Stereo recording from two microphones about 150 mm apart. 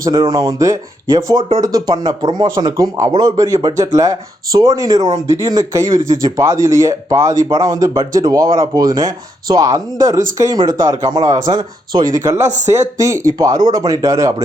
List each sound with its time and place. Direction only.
0.0 s speech: 25° right (ahead or behind)